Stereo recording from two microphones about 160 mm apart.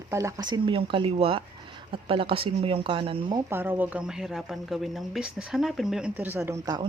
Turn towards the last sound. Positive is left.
turn(degrees=-25)  # may be behind; listen again after turning